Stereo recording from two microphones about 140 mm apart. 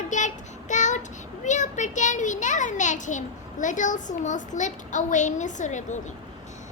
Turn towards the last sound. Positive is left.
turn(degrees=60)  # may be behind; listen again after turning